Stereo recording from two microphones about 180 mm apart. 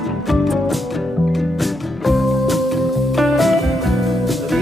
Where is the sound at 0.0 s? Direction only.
Centre (ahead or behind).